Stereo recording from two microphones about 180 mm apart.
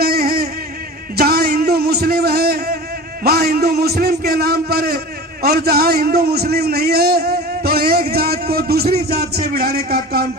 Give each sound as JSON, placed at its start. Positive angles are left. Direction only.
{"t": 0.0, "sound": "a sound", "side_deg": -60}
{"t": 1.1, "sound": "music", "side_deg": -60}
{"t": 3.2, "sound": "a man's voice", "side_deg": -60}